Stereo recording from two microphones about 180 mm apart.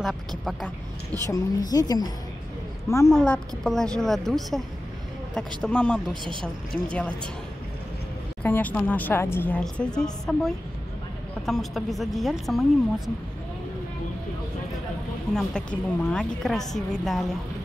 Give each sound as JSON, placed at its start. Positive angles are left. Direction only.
{"t": 0.0, "sound": "a woman's voice", "side_deg": 0}
{"t": 1.3, "sound": "a woman's voice", "side_deg": 20}
{"t": 3.1, "sound": "a woman's voice", "side_deg": 0}
{"t": 8.4, "sound": "a woman's voice", "side_deg": 10}
{"t": 15.3, "sound": "a woman's voice", "side_deg": 5}